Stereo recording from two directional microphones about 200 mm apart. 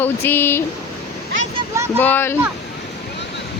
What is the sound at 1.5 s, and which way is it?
Speech, 15° right (ahead or behind).